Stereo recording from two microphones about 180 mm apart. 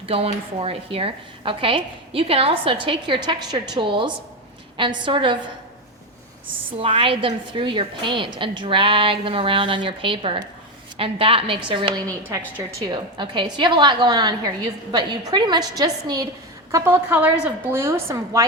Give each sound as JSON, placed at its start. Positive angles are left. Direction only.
{"t": 0.0, "sound": "a woman's voice", "side_deg": -30}
{"t": 6.7, "sound": "a woman's voice", "side_deg": -30}